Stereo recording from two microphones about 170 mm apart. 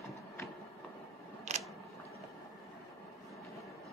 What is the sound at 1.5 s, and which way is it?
Biting, 40° right (ahead or behind).